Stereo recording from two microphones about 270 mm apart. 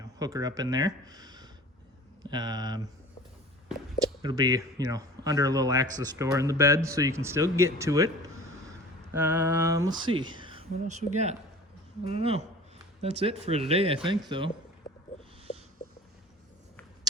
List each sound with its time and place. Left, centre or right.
0.0 s speech: centre
4.0 s speech: centre
9.1 s speech: centre